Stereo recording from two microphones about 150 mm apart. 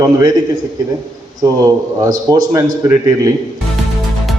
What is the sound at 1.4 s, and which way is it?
A man's voice, 25° right (ahead or behind).